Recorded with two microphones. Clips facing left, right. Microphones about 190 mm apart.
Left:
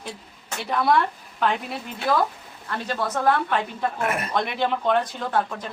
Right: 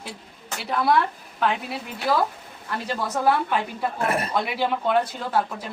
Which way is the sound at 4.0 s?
35° right (ahead or behind).